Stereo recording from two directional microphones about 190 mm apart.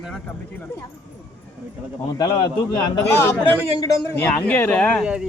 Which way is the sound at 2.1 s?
20° left (ahead or behind).